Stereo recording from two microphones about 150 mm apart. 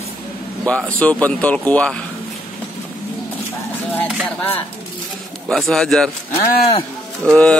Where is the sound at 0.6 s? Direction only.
10° left (ahead or behind).